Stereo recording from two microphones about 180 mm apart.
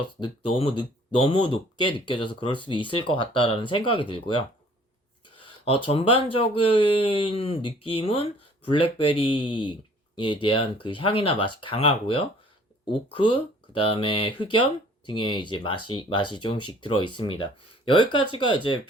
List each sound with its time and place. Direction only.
0.2 s speech: 30° left (ahead or behind)